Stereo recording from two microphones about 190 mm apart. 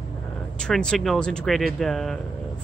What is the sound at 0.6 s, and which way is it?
Speech, 5° left (ahead or behind).